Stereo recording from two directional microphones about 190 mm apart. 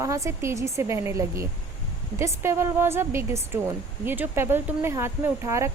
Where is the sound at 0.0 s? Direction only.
15° right (ahead or behind).